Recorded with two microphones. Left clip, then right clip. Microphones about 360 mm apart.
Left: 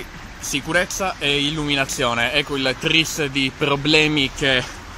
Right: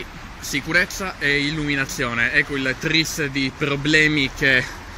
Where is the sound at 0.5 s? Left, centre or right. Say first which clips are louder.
Right 1 dB; centre.